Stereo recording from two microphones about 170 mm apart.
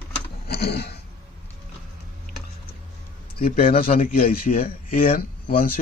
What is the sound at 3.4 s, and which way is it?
Speech, 60° left (ahead or behind).